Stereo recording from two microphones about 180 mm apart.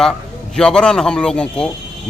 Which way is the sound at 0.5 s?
5° left (ahead or behind).